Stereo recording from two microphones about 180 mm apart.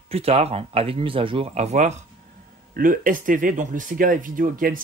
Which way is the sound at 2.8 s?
50° right (ahead or behind).